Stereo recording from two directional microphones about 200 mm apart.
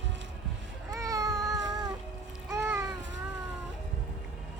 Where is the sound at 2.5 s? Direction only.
15° right (ahead or behind).